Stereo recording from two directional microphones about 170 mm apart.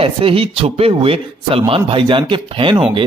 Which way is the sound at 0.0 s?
35° right (ahead or behind).